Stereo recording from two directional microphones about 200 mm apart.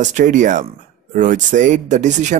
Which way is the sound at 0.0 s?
40° right (ahead or behind).